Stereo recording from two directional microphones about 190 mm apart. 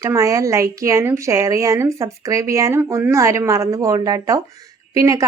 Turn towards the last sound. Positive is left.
turn(degrees=-15)  # may be behind; listen again after turning